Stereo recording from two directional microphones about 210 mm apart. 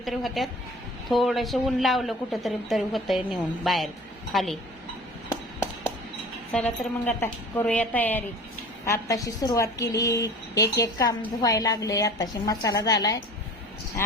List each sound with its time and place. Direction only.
0.0 s a woman's voice: centre (ahead or behind)
6.5 s a woman's voice: 5° left (ahead or behind)